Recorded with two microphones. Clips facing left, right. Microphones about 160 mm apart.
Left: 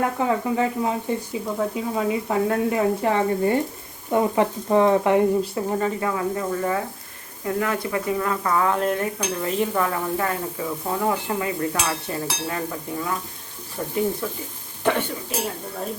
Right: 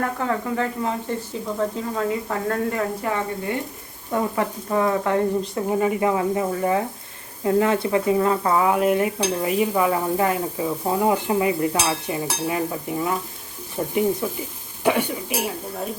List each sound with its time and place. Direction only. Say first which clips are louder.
0.0 s speech: left 2 dB; 15° left (ahead or behind)
3.0 s frying: left 5 dB; 25° left (ahead or behind)
5.7 s speech: right 5 dB; 15° right (ahead or behind)
8.6 s stir: right 3 dB; 10° right (ahead or behind)
13.8 s speech: right 3 dB; 20° right (ahead or behind)
14.2 s stir: right 3 dB; 15° right (ahead or behind)